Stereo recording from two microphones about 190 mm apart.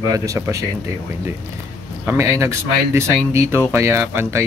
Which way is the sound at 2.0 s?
15° right (ahead or behind).